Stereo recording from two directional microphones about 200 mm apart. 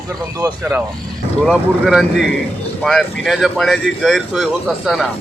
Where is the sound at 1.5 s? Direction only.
Centre (ahead or behind).